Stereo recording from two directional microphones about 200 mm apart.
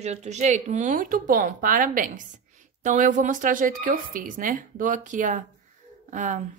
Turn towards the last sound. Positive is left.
turn(degrees=-40)  # may be behind; listen again after turning